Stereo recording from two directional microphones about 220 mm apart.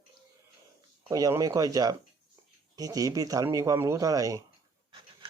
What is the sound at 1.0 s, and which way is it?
Speech, 15° right (ahead or behind).